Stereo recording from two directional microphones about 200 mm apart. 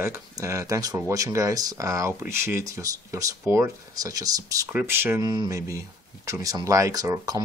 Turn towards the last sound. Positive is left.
turn(degrees=-20)  # may be behind; listen again after turning